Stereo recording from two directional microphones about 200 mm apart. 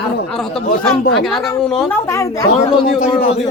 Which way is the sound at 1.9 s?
15° left (ahead or behind).